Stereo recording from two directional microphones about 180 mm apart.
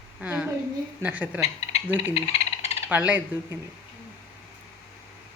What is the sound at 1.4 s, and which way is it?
Frog, 35° left (ahead or behind).